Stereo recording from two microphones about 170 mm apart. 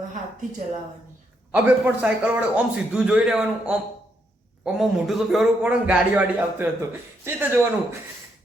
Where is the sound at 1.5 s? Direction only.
10° right (ahead or behind).